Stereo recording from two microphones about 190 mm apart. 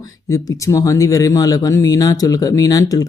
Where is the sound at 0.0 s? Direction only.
20° left (ahead or behind).